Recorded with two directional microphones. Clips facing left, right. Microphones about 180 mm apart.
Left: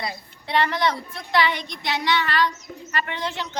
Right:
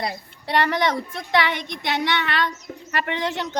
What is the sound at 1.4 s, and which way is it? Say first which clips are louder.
Child singing: left 1 dB; 60° right (ahead or behind).